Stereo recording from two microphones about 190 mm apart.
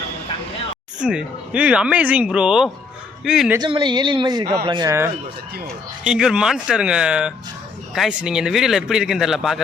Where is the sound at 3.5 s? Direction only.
25° right (ahead or behind).